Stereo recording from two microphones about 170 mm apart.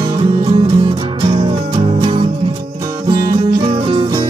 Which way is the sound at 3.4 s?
30° right (ahead or behind).